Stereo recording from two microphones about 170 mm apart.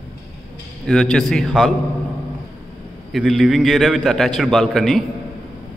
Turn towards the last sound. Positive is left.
turn(degrees=0)  # may be behind; listen again after turning